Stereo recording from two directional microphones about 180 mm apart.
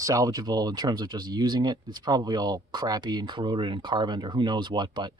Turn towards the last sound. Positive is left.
turn(degrees=-25)  # may be behind; listen again after turning